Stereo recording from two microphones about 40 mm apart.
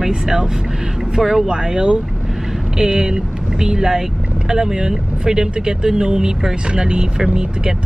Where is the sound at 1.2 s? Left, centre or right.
Centre.